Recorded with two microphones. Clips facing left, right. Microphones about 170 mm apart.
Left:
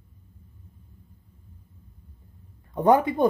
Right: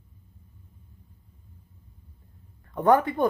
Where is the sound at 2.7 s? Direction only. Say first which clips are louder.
Left 1 dB; 15° left (ahead or behind).